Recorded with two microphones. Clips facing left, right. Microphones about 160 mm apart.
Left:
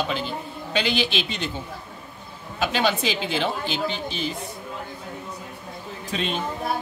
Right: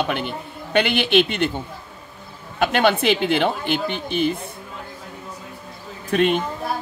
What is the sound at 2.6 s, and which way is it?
Speech, 60° right (ahead or behind).